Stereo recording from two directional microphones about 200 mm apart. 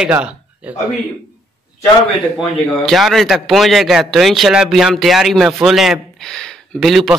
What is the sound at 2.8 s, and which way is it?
Speech, centre (ahead or behind).